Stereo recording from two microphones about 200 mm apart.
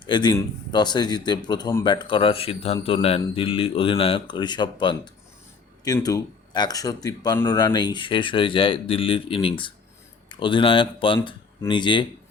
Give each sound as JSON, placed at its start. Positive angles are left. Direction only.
{"t": 0.0, "sound": "speech", "side_deg": 20}